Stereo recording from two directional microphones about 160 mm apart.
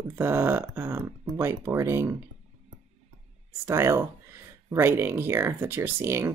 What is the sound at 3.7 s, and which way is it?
Speech, 15° right (ahead or behind).